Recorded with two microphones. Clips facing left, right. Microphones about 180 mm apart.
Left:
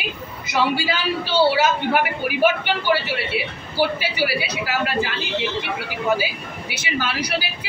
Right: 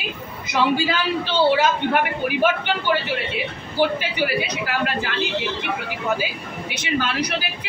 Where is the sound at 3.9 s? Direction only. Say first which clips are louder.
Even; 10° left (ahead or behind).